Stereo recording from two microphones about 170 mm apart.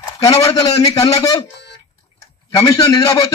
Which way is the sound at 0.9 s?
20° left (ahead or behind).